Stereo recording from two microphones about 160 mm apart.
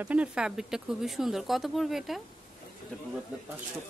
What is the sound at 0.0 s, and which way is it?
Speech, 10° right (ahead or behind).